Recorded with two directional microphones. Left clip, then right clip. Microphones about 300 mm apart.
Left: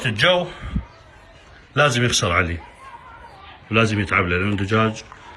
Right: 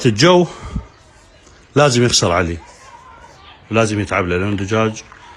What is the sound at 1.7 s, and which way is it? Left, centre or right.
Speech, centre.